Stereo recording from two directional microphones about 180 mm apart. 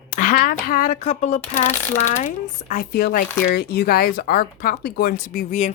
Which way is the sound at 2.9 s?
60° left (ahead or behind).